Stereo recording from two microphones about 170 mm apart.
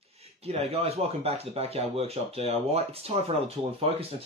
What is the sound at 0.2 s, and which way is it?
Speech, 35° right (ahead or behind).